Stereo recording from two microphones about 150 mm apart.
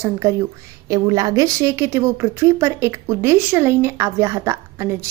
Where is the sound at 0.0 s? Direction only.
20° right (ahead or behind).